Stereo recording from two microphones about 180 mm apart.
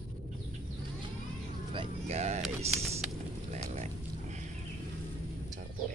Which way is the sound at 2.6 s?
35° right (ahead or behind).